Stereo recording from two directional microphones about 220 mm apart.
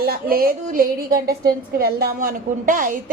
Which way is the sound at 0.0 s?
40° right (ahead or behind).